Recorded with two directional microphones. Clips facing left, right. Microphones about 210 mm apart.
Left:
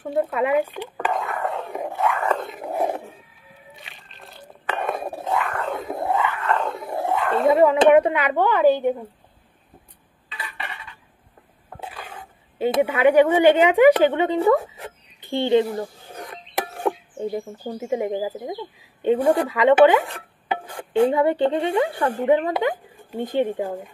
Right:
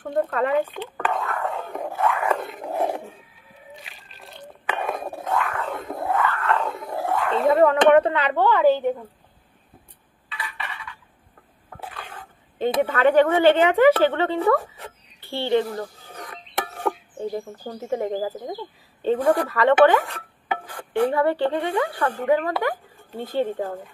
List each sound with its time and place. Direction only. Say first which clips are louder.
0.0 s speech: left 1 dB; 10° left (ahead or behind)
2.0 s dog: even; centre (ahead or behind)
3.8 s a sound: left 1 dB; centre (ahead or behind)
6.0 s a sound: even; 20° left (ahead or behind)
6.4 s a sound: even; centre (ahead or behind)
6.9 s dog: left 2 dB; 15° left (ahead or behind)
7.2 s a woman's voice: left 1 dB; 5° left (ahead or behind)
11.8 s stir: left 1 dB; 10° left (ahead or behind)
12.5 s a woman's voice: left 1 dB; 10° left (ahead or behind)
16.2 s a sound: left 2 dB; 30° left (ahead or behind)
17.2 s a woman's voice: left 2 dB; 10° left (ahead or behind)
20.4 s speech: left 2 dB; 25° left (ahead or behind)